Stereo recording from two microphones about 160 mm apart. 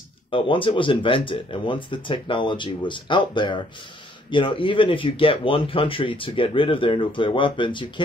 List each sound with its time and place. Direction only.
0.3 s speech: 30° left (ahead or behind)